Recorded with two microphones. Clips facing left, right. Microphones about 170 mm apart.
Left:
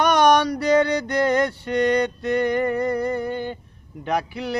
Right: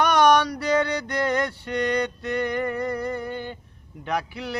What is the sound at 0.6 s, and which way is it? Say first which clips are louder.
Music: left 5 dB; 45° left (ahead or behind).